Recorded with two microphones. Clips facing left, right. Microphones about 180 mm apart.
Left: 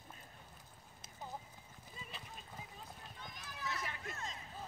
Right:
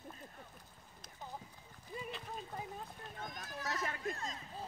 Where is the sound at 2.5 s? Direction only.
50° right (ahead or behind).